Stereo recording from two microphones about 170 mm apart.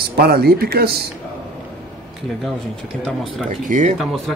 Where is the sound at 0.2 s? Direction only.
65° right (ahead or behind).